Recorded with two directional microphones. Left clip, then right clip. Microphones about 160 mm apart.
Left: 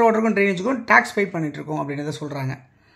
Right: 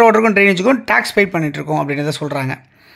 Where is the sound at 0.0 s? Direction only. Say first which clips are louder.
Right 7 dB; 35° right (ahead or behind).